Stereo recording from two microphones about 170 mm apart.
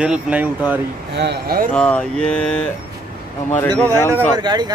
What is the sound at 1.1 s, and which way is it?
Speech, 75° right (ahead or behind).